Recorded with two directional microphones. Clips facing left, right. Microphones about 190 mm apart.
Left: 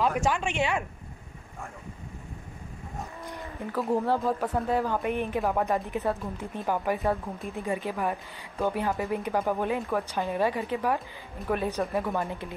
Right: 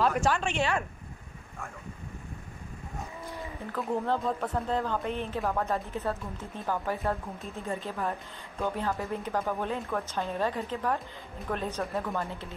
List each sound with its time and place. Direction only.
0.2 s speech: 15° left (ahead or behind)
3.9 s speech: 10° left (ahead or behind)